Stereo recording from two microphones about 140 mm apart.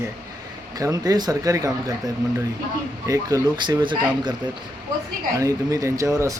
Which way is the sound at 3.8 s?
35° right (ahead or behind).